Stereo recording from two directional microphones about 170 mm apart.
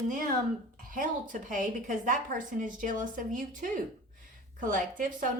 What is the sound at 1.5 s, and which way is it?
A woman's voice, 50° right (ahead or behind).